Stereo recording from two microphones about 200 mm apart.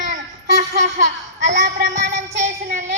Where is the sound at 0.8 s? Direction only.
35° right (ahead or behind).